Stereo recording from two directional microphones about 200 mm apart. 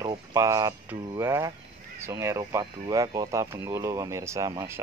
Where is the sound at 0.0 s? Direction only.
20° right (ahead or behind).